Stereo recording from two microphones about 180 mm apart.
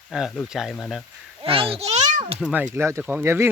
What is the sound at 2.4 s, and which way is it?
Speech, centre (ahead or behind).